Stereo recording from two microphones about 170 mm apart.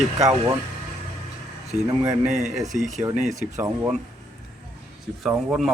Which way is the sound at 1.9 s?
25° right (ahead or behind).